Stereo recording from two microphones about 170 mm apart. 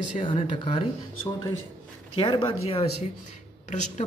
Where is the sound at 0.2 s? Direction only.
30° left (ahead or behind).